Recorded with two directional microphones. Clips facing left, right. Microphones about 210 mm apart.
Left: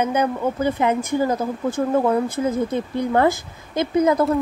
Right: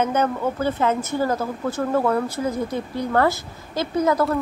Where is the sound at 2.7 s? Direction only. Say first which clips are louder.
Left 2 dB; 20° left (ahead or behind).